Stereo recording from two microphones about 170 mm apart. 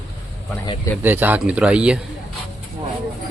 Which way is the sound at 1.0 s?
10° right (ahead or behind).